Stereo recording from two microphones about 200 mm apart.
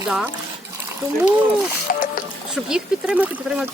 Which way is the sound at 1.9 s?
45° left (ahead or behind).